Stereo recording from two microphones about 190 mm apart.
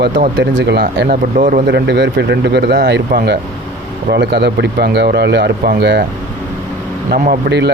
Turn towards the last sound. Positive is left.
turn(degrees=-60)  # may be behind; listen again after turning